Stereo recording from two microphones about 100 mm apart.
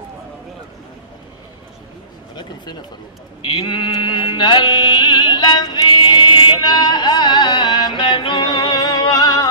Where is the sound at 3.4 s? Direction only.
55° left (ahead or behind).